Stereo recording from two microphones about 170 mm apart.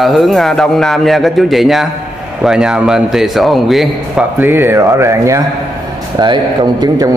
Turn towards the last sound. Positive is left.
turn(degrees=-25)  # may be behind; listen again after turning